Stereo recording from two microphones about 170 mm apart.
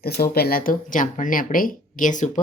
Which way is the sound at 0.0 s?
65° left (ahead or behind).